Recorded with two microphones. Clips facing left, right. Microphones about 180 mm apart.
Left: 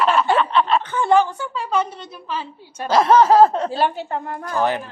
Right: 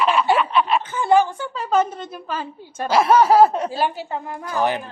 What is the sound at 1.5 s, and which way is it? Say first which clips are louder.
A woman's voice: right 3 dB; 45° right (ahead or behind).